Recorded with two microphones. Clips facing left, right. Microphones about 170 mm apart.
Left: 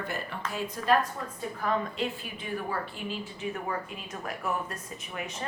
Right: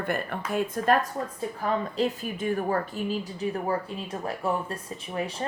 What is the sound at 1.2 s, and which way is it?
A woman's voice, 30° right (ahead or behind).